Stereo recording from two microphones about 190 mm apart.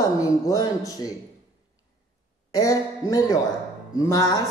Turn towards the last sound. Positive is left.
turn(degrees=20)  # may be behind; listen again after turning